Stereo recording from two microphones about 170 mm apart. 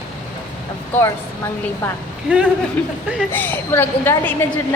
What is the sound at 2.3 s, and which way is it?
Speech, 5° right (ahead or behind).